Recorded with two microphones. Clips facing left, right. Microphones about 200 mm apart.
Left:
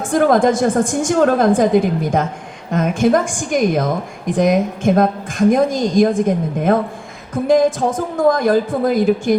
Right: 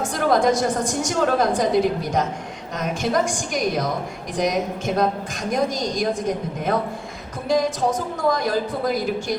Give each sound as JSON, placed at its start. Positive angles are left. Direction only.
{"t": 0.1, "sound": "a woman's voice", "side_deg": 50}
{"t": 2.7, "sound": "a woman's voice", "side_deg": 50}